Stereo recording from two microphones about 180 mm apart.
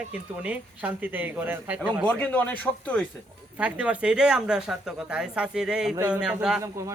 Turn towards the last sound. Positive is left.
turn(degrees=-15)  # may be behind; listen again after turning